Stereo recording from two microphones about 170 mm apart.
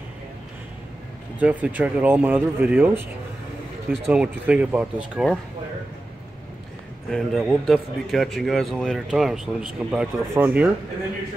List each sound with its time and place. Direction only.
1.4 s speech: 10° right (ahead or behind)
4.1 s speech: 5° right (ahead or behind)
7.1 s a man's voice: centre (ahead or behind)